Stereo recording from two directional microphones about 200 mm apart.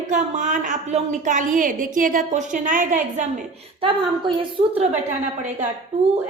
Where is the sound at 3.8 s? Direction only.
25° right (ahead or behind).